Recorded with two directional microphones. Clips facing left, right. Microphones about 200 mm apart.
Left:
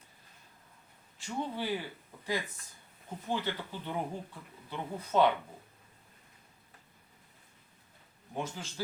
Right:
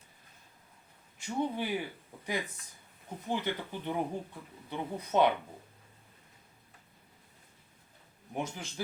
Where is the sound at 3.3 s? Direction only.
15° right (ahead or behind).